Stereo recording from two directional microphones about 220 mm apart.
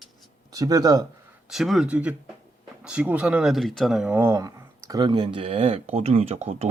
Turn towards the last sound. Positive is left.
turn(degrees=-30)  # may be behind; listen again after turning